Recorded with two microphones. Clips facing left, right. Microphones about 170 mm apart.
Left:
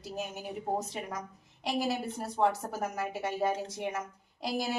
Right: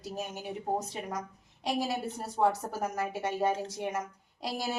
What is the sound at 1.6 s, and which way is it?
A woman's voice, centre (ahead or behind).